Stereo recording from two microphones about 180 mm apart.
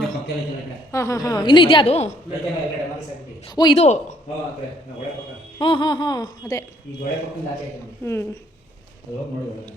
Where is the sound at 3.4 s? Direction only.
25° left (ahead or behind).